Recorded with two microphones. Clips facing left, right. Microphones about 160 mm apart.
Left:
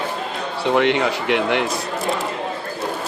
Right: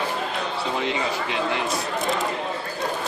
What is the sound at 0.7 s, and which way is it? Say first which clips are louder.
Speech: left 10 dB; 75° left (ahead or behind).